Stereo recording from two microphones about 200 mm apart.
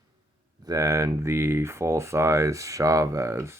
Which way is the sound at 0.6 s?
15° right (ahead or behind).